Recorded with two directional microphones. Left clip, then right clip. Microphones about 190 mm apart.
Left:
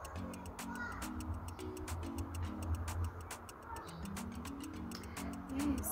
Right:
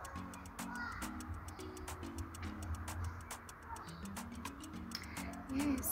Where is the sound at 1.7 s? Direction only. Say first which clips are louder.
Left 3 dB; 10° left (ahead or behind).